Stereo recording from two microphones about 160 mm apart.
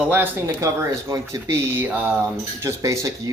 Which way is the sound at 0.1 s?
15° right (ahead or behind).